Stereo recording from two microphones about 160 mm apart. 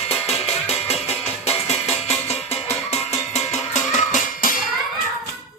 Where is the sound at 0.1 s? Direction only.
40° left (ahead or behind).